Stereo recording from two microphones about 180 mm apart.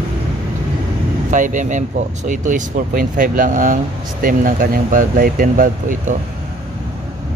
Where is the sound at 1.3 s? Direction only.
45° right (ahead or behind).